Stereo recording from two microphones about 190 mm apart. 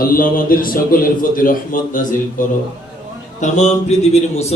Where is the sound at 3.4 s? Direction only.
40° left (ahead or behind).